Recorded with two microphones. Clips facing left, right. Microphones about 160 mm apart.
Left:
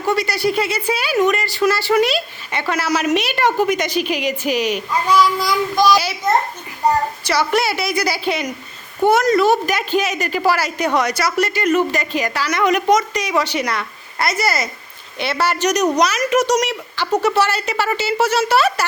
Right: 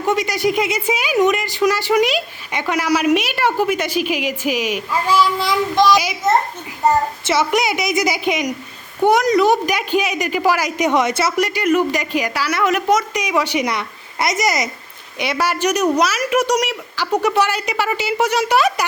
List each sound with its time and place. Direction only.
0.0 s speech: 15° right (ahead or behind)
7.3 s speech: 20° right (ahead or behind)
11.3 s speech: 10° right (ahead or behind)